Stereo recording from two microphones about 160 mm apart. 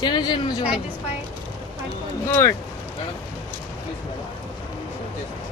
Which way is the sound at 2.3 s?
20° left (ahead or behind).